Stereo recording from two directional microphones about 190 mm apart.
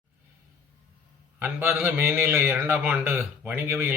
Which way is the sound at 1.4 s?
10° right (ahead or behind).